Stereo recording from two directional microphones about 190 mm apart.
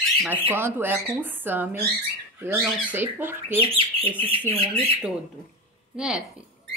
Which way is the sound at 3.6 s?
30° right (ahead or behind).